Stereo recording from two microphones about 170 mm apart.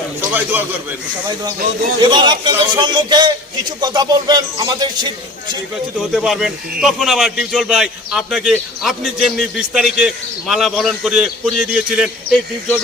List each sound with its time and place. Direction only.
0.2 s a man's voice: 10° right (ahead or behind)
2.0 s speech: 25° right (ahead or behind)
6.0 s speech: centre (ahead or behind)